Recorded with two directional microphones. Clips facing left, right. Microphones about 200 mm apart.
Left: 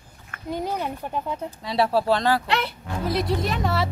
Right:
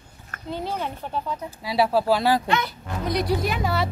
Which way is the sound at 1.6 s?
5° right (ahead or behind).